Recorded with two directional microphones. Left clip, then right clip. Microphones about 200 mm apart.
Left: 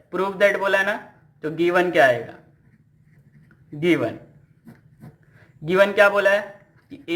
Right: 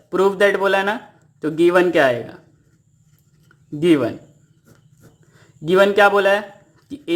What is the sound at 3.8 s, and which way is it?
Speech, 55° right (ahead or behind).